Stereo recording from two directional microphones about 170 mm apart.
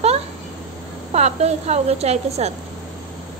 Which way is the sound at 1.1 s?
40° right (ahead or behind).